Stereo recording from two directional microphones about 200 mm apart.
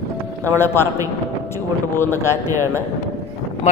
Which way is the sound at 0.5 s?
10° left (ahead or behind).